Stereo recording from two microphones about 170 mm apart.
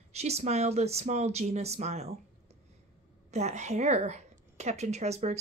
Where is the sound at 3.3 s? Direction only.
40° right (ahead or behind).